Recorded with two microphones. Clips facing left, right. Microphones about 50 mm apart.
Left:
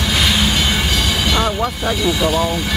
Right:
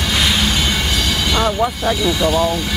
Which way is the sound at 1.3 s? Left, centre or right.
Centre.